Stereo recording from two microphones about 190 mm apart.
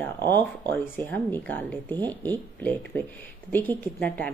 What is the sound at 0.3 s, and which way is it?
A woman's voice, 10° left (ahead or behind).